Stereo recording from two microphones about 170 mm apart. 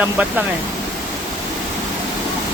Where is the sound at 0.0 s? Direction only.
5° right (ahead or behind).